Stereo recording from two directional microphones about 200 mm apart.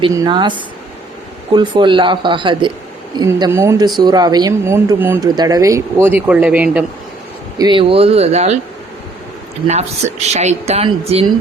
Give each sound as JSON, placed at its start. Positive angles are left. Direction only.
{"t": 0.0, "sound": "a woman's voice", "side_deg": -20}
{"t": 7.6, "sound": "speech", "side_deg": -25}
{"t": 9.6, "sound": "speech", "side_deg": -35}